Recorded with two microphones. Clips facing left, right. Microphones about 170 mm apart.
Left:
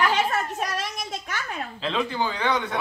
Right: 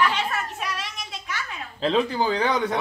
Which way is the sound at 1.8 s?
40° right (ahead or behind).